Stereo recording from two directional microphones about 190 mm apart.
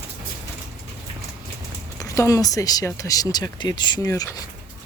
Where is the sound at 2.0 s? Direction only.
15° left (ahead or behind).